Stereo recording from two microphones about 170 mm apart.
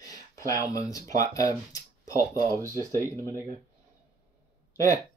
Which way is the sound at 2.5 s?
20° right (ahead or behind).